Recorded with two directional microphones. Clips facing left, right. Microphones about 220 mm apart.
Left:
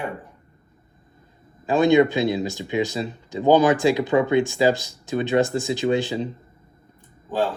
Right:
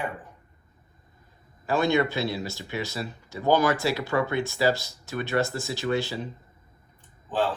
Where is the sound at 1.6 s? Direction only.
20° left (ahead or behind).